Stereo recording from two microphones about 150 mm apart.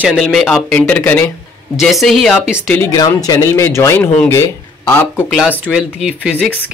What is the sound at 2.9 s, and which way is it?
Speech, 25° left (ahead or behind).